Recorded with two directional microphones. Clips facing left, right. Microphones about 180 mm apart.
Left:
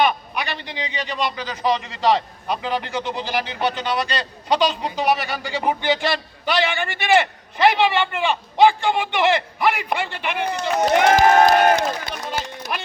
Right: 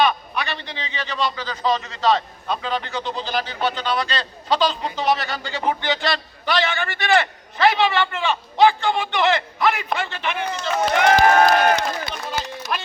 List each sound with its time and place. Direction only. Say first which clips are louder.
0.0 s a man's voice: even; 15° left (ahead or behind)
11.0 s crowd: even; 25° left (ahead or behind)
11.4 s speech: left 2 dB; 45° left (ahead or behind)
12.1 s run: even; 15° left (ahead or behind)